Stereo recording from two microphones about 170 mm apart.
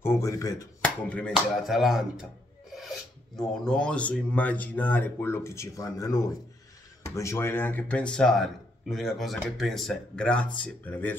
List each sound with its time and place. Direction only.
0.0 s speech: 15° left (ahead or behind)
0.8 s speech: 10° left (ahead or behind)
3.6 s speech: 5° left (ahead or behind)